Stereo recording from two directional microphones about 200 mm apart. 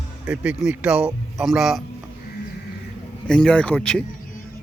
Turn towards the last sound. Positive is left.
turn(degrees=5)  # may be behind; listen again after turning